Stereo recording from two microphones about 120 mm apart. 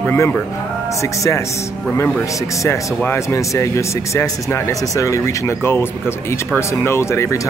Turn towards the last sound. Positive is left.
turn(degrees=25)  # may be behind; listen again after turning